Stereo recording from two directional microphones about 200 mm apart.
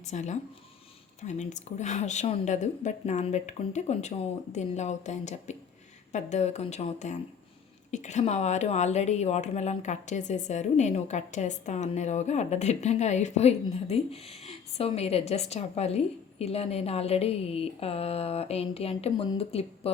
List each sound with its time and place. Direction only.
0.0 s a woman's voice: 35° left (ahead or behind)